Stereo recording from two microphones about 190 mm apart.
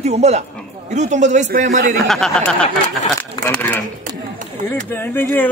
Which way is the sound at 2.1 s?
5° left (ahead or behind).